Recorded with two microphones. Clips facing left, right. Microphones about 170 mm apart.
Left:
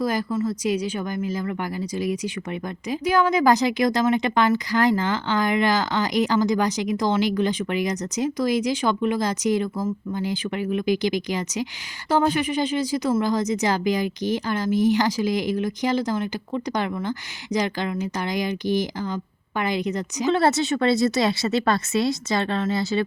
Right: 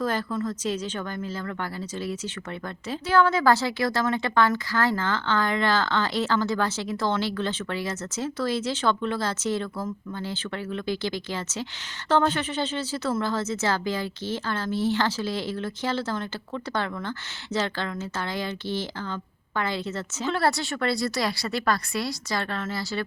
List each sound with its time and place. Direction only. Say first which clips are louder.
0.0 s speech: left 3 dB; 10° left (ahead or behind)